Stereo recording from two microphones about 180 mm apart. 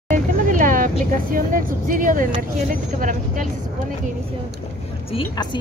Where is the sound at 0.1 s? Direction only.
45° right (ahead or behind).